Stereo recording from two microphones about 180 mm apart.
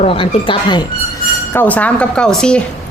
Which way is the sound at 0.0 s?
30° left (ahead or behind).